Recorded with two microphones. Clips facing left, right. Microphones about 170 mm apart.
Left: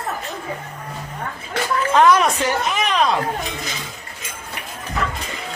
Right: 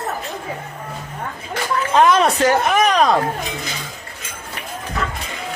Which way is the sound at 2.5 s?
50° right (ahead or behind).